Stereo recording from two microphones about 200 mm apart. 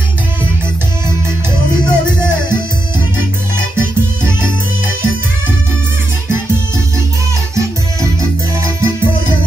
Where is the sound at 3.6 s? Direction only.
10° right (ahead or behind).